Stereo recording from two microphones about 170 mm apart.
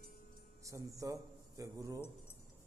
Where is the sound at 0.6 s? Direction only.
20° right (ahead or behind).